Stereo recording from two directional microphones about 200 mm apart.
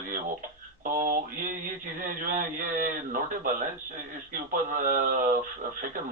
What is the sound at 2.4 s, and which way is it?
A man's voice, 45° right (ahead or behind).